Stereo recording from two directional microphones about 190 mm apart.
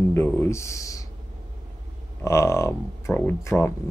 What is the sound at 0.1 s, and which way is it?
Speech, 15° left (ahead or behind).